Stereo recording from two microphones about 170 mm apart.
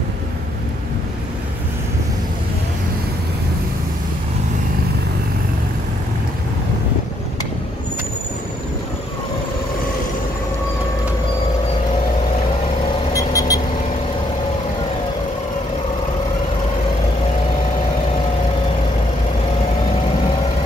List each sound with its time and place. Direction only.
13.1 s vehicle: 20° left (ahead or behind)